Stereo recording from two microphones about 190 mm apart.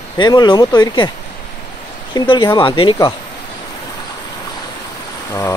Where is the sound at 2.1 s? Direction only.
25° left (ahead or behind).